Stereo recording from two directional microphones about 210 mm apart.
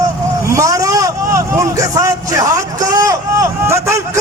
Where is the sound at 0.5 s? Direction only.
15° right (ahead or behind).